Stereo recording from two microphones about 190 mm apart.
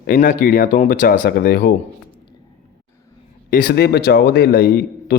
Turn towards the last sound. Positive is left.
turn(degrees=55)  # may be behind; listen again after turning